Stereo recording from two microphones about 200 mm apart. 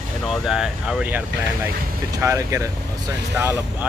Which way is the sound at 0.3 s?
5° right (ahead or behind).